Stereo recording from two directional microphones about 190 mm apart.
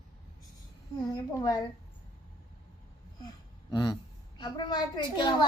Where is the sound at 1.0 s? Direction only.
20° left (ahead or behind).